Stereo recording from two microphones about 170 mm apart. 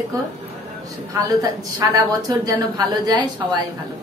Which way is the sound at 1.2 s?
20° right (ahead or behind).